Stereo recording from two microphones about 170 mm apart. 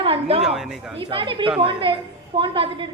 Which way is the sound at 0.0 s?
35° right (ahead or behind).